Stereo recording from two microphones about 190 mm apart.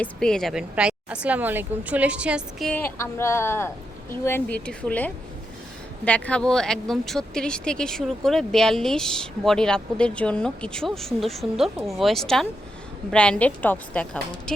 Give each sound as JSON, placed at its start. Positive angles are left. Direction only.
{"t": 0.0, "sound": "speech", "side_deg": 5}